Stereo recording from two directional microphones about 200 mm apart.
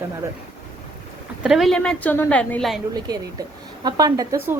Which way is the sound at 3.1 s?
20° right (ahead or behind).